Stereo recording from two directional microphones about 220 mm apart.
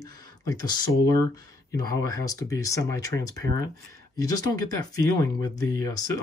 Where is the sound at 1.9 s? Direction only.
15° left (ahead or behind).